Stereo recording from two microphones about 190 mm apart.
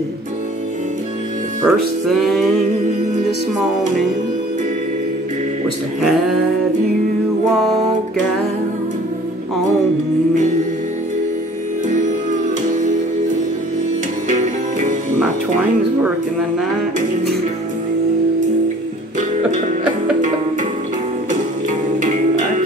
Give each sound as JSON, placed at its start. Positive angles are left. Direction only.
{"t": 1.6, "sound": "music", "side_deg": -5}
{"t": 11.9, "sound": "music", "side_deg": -40}
{"t": 14.3, "sound": "music", "side_deg": -40}
{"t": 21.3, "sound": "music", "side_deg": -40}